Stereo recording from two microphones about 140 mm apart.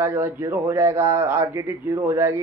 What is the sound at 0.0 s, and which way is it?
Speech, 15° right (ahead or behind).